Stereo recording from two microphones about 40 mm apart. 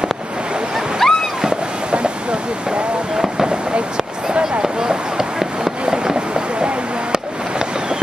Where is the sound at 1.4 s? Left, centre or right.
Right.